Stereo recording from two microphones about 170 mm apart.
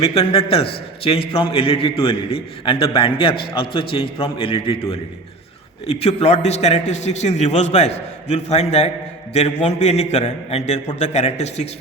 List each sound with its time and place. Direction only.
0.0 s a man's voice: 35° left (ahead or behind)